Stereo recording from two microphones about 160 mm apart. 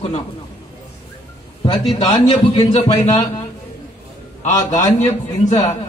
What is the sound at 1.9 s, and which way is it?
A man's voice, 30° left (ahead or behind).